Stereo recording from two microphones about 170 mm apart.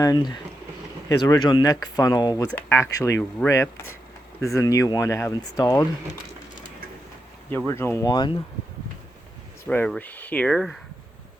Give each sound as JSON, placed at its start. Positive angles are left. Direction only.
{"t": 0.0, "sound": "speech", "side_deg": 25}
{"t": 7.7, "sound": "speech", "side_deg": 15}
{"t": 9.6, "sound": "speech", "side_deg": 5}